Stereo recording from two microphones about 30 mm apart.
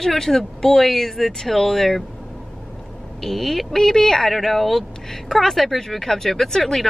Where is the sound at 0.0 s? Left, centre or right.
Centre.